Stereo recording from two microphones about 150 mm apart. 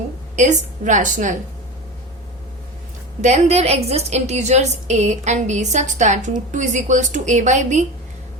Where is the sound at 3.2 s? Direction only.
50° right (ahead or behind).